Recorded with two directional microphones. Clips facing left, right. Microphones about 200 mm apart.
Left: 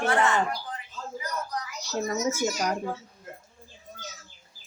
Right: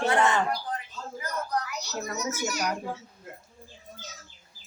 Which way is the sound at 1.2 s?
60° right (ahead or behind).